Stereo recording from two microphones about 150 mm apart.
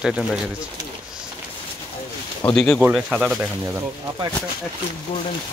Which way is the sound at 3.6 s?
20° right (ahead or behind).